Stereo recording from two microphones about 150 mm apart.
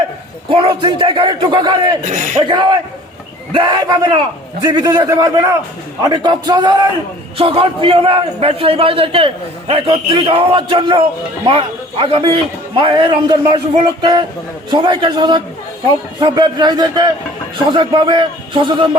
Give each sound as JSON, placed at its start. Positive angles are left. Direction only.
{"t": 0.5, "sound": "a man's voice", "side_deg": -35}
{"t": 2.0, "sound": "speech", "side_deg": -60}
{"t": 2.4, "sound": "a man's voice", "side_deg": -30}